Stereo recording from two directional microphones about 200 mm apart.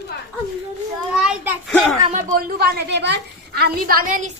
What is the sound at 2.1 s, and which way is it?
A woman's voice, 45° right (ahead or behind).